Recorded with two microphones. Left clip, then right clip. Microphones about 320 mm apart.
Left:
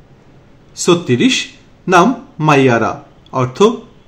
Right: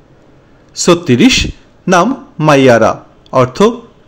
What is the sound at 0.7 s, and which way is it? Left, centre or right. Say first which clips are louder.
Speech: right 3 dB; centre.